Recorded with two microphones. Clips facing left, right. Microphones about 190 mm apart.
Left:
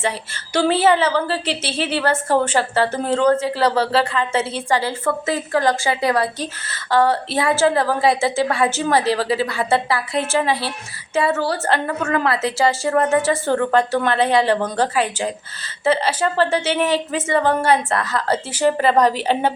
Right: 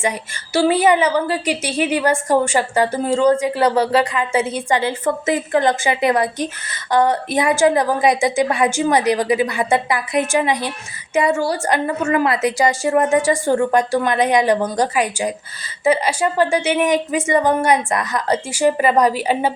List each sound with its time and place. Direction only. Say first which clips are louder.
0.5 s a woman's voice: right 1 dB; 10° right (ahead or behind)